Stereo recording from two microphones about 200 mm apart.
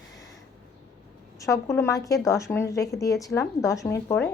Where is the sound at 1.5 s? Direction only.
15° left (ahead or behind).